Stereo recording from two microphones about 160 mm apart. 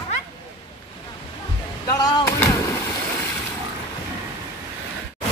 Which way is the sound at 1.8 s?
20° left (ahead or behind).